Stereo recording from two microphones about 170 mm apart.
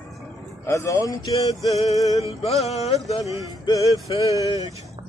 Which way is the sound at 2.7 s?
40° left (ahead or behind).